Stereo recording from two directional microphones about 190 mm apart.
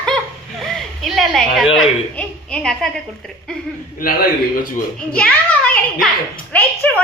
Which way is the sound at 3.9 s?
50° left (ahead or behind).